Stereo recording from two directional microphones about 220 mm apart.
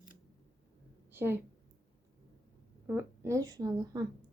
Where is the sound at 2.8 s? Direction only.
10° right (ahead or behind).